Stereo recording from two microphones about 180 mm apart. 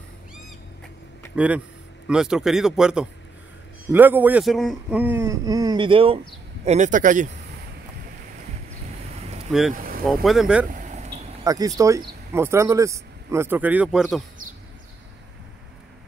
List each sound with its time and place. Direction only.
1.3 s a man's voice: 10° right (ahead or behind); by 6.1 s 30° right (ahead or behind)
6.6 s speech: 40° right (ahead or behind)
9.5 s a man's voice: centre (ahead or behind)
10.7 s a sound: 45° right (ahead or behind)
11.4 s speech: 20° right (ahead or behind); by 14.2 s 5° right (ahead or behind)